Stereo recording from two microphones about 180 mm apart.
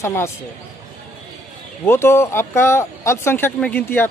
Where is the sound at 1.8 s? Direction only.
15° left (ahead or behind).